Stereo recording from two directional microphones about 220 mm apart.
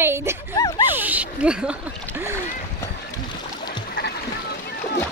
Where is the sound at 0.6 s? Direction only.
15° left (ahead or behind).